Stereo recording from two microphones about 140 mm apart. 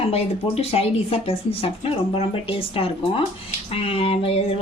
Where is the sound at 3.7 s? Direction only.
45° left (ahead or behind).